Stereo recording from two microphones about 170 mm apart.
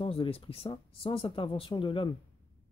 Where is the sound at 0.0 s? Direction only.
35° left (ahead or behind).